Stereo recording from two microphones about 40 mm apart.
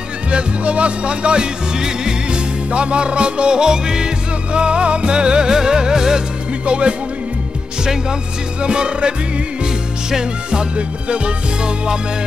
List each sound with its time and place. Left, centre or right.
0.3 s music: right
6.6 s music: right
7.8 s music: centre
10.1 s music: centre